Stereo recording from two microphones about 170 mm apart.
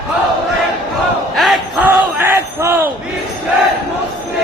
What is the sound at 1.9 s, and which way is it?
Crowd, 10° right (ahead or behind).